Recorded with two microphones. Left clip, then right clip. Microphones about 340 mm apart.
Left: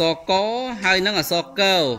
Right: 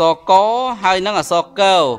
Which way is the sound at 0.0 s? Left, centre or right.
Right.